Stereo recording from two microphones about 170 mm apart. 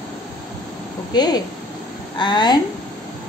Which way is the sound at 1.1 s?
25° left (ahead or behind).